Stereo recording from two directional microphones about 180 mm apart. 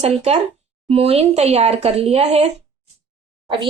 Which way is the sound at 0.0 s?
35° right (ahead or behind).